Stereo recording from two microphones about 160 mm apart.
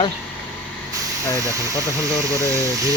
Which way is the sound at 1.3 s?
20° right (ahead or behind).